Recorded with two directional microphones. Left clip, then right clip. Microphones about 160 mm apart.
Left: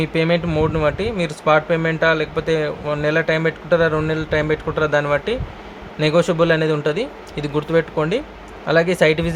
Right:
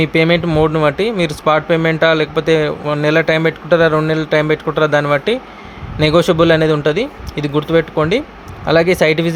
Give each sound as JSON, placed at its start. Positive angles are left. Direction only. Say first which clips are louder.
{"t": 0.0, "sound": "speech", "louder": "right 6 dB", "side_deg": -30}